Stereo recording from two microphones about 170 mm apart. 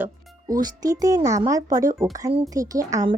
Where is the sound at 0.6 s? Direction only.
20° right (ahead or behind).